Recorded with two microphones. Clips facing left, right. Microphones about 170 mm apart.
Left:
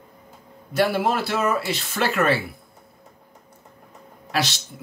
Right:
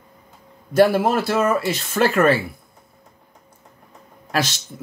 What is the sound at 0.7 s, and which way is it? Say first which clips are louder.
Speech: right 5 dB; 50° right (ahead or behind).